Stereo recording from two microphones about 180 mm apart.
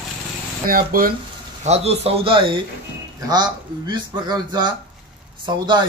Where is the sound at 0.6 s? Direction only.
55° right (ahead or behind).